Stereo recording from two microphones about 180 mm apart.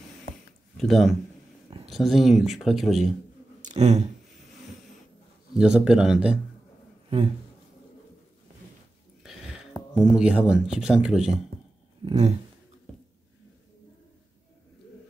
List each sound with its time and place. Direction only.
0.7 s speech: centre (ahead or behind)
3.6 s speech: 40° right (ahead or behind)
5.5 s speech: 5° right (ahead or behind)
9.2 s a sound: centre (ahead or behind)
9.9 s speech: 5° right (ahead or behind)
12.0 s a sound: 25° right (ahead or behind)